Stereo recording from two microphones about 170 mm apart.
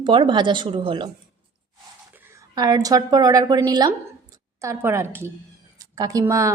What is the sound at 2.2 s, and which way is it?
A woman's voice, 20° right (ahead or behind).